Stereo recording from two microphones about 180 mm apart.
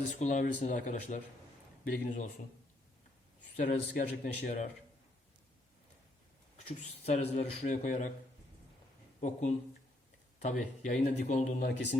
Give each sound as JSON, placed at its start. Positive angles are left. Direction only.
{"t": 0.2, "sound": "speech", "side_deg": 45}
{"t": 3.6, "sound": "speech", "side_deg": 45}
{"t": 6.8, "sound": "speech", "side_deg": 35}
{"t": 9.2, "sound": "speech", "side_deg": 40}